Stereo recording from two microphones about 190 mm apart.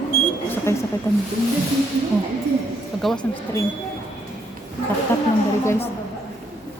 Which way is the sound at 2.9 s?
Centre (ahead or behind).